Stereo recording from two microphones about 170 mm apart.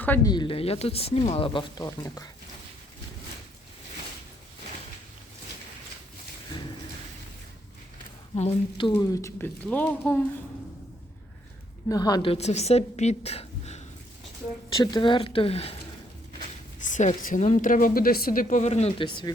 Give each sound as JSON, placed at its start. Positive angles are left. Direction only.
{"t": 0.0, "sound": "speech", "side_deg": 10}
{"t": 0.3, "sound": "speech", "side_deg": 30}
{"t": 8.4, "sound": "speech", "side_deg": 35}
{"t": 9.0, "sound": "speech", "side_deg": 20}
{"t": 11.9, "sound": "speech", "side_deg": 20}
{"t": 12.3, "sound": "a woman's voice", "side_deg": 40}
{"t": 14.7, "sound": "speech", "side_deg": 25}
{"t": 16.8, "sound": "a woman's voice", "side_deg": 45}